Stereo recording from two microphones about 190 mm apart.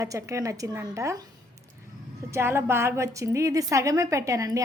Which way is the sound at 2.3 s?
15° right (ahead or behind).